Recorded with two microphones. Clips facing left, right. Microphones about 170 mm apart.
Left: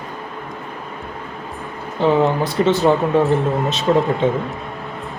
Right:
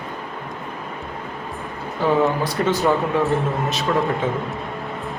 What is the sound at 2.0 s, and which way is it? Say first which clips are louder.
Speech: left 3 dB; 25° left (ahead or behind).